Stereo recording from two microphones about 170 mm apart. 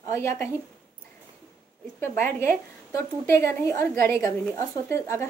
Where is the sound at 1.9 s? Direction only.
15° left (ahead or behind).